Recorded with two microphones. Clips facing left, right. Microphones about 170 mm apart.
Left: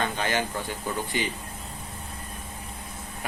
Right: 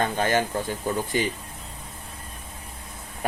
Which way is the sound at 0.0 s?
45° right (ahead or behind).